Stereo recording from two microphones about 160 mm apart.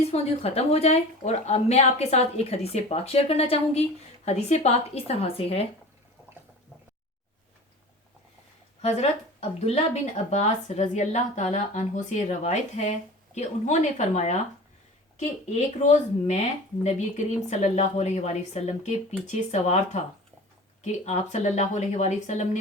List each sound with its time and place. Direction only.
0.0 s a woman's voice: 40° left (ahead or behind)
8.8 s a woman's voice: 40° left (ahead or behind)
17.5 s a woman's voice: 50° left (ahead or behind)